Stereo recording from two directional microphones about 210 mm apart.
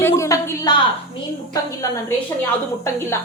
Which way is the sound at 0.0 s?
15° left (ahead or behind).